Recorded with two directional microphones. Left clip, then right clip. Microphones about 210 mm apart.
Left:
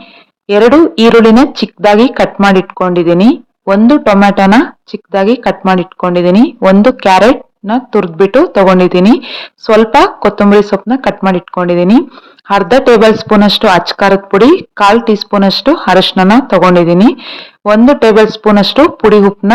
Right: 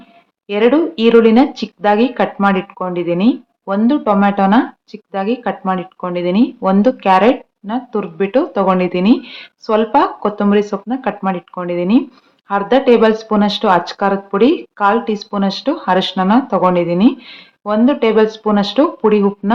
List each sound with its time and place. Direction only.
0.4 s a woman's voice: 45° left (ahead or behind)